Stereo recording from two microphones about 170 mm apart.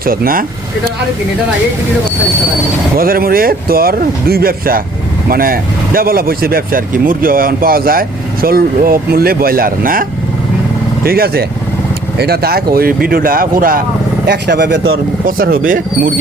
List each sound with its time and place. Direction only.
0.0 s speech: 55° right (ahead or behind)
3.0 s speech: 60° right (ahead or behind)
14.3 s speech: 75° right (ahead or behind)
15.4 s speech: 60° right (ahead or behind)